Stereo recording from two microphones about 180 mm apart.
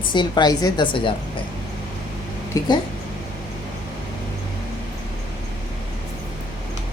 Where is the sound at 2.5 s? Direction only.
20° left (ahead or behind).